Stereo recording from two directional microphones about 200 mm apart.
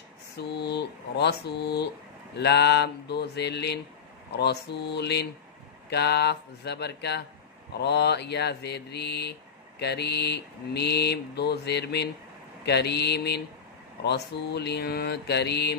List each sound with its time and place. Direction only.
0.4 s speech: 55° left (ahead or behind)